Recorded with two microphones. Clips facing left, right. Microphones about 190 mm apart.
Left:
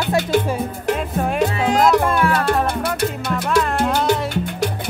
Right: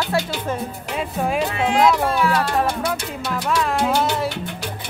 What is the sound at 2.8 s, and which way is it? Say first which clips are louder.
Music: left 4 dB; centre (ahead or behind).